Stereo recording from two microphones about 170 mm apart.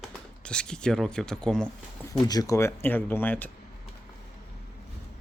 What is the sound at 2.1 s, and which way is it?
Speech, 25° left (ahead or behind).